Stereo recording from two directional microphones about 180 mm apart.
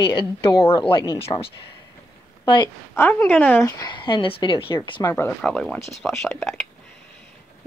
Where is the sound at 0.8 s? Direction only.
30° left (ahead or behind).